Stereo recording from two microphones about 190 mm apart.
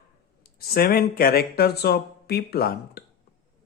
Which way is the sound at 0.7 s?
50° left (ahead or behind).